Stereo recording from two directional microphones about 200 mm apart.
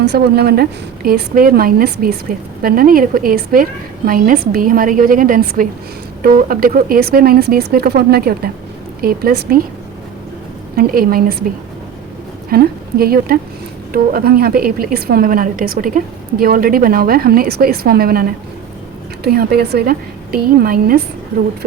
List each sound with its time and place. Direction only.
0.0 s a woman's voice: 55° right (ahead or behind)
10.8 s a woman's voice: 45° right (ahead or behind)
12.5 s a woman's voice: 50° right (ahead or behind)